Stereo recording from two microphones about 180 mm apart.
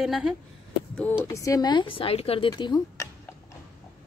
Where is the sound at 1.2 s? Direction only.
20° left (ahead or behind).